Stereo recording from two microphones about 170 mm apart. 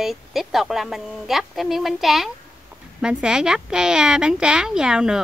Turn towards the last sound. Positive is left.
turn(degrees=-5)  # may be behind; listen again after turning